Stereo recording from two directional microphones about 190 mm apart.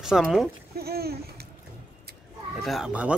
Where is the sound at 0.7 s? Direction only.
55° right (ahead or behind).